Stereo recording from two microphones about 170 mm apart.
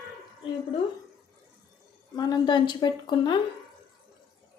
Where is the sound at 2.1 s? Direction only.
25° left (ahead or behind).